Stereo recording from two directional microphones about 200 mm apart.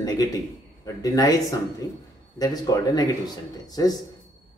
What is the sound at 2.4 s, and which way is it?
Speech, 20° left (ahead or behind).